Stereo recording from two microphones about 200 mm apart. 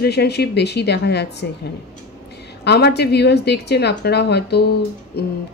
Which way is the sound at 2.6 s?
55° left (ahead or behind).